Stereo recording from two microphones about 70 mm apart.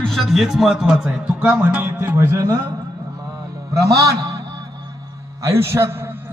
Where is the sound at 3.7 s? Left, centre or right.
Right.